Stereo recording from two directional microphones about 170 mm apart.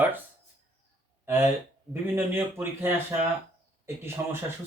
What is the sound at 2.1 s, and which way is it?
Speech, 15° right (ahead or behind).